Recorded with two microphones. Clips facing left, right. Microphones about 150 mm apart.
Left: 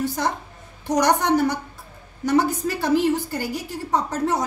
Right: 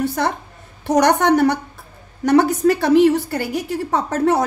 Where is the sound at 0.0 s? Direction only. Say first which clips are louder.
Right 4 dB; 65° right (ahead or behind).